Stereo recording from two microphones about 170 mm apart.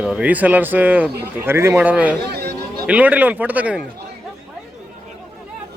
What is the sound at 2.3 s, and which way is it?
Chatter, 70° right (ahead or behind).